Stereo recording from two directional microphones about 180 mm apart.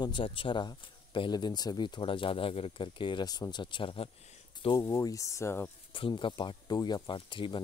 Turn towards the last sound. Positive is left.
turn(degrees=25)  # may be behind; listen again after turning